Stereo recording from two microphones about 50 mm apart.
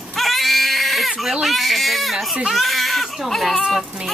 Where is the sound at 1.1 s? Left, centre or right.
Centre.